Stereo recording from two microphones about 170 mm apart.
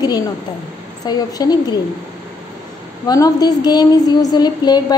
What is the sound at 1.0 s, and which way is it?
Speech, 25° left (ahead or behind).